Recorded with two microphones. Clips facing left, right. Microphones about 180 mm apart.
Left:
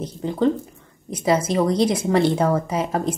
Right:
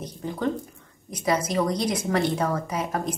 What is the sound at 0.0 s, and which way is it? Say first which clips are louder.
A woman's voice: left 7 dB; 30° left (ahead or behind).